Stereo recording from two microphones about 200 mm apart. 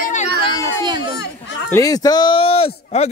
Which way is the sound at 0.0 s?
35° left (ahead or behind).